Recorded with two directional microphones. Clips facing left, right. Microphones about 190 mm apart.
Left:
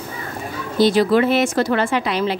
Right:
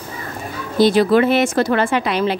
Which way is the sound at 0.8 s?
55° right (ahead or behind).